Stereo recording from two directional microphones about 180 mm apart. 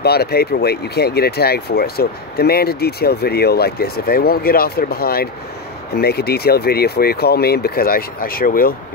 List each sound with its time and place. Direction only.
0.0 s speech: 60° left (ahead or behind)